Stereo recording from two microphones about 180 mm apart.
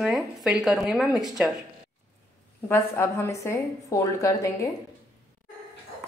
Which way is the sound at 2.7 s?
15° left (ahead or behind).